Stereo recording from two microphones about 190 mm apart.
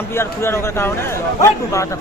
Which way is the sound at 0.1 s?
15° left (ahead or behind).